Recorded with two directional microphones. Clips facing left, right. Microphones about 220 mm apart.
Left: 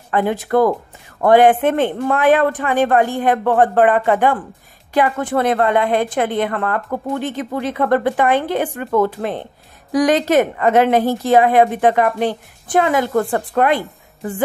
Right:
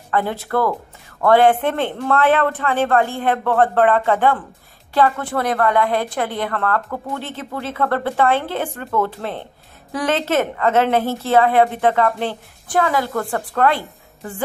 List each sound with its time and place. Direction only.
0.1 s a woman's voice: 15° left (ahead or behind)